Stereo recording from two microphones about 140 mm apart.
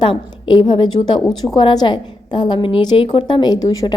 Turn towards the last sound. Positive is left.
turn(degrees=30)  # may be behind; listen again after turning